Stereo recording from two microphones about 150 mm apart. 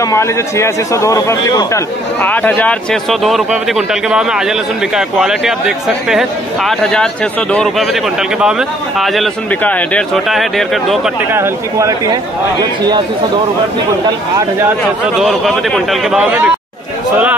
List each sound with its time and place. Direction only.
0.0 s a man's voice: 20° left (ahead or behind); by 11.0 s centre (ahead or behind)
11.3 s speech: 15° right (ahead or behind)
15.1 s speech: centre (ahead or behind)